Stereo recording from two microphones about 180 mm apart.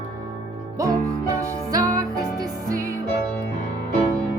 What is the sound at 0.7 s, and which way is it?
Music, 20° right (ahead or behind).